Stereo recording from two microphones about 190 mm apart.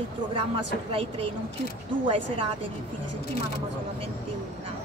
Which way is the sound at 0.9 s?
30° right (ahead or behind).